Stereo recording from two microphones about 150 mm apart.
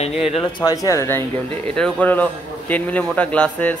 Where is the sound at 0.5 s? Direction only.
25° left (ahead or behind).